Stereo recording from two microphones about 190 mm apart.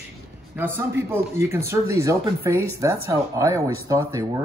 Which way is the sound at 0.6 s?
15° right (ahead or behind).